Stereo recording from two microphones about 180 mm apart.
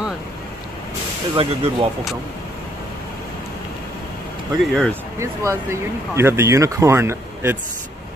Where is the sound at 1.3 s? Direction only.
30° right (ahead or behind).